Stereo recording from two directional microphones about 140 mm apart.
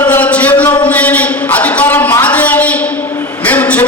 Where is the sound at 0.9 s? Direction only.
10° left (ahead or behind).